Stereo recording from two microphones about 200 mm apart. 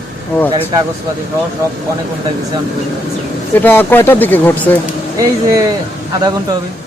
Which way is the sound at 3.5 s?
10° left (ahead or behind).